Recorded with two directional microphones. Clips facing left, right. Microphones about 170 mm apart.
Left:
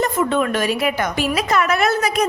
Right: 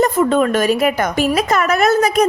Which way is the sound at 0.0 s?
40° right (ahead or behind).